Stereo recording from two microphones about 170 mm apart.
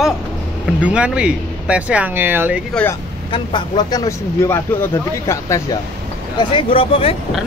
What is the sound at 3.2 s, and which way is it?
Speech, 30° left (ahead or behind).